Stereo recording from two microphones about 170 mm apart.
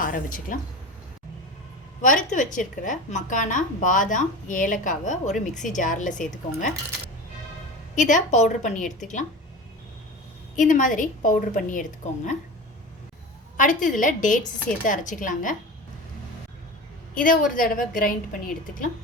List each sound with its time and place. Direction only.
0.0 s a woman's voice: 50° left (ahead or behind)
2.0 s a woman's voice: 50° left (ahead or behind)
7.9 s a woman's voice: 45° left (ahead or behind)
10.5 s a woman's voice: 50° left (ahead or behind)
13.6 s a woman's voice: 50° left (ahead or behind)
17.2 s a woman's voice: 55° left (ahead or behind)